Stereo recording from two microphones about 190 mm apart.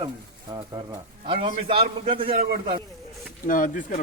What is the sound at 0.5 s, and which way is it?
A man's voice, 20° right (ahead or behind).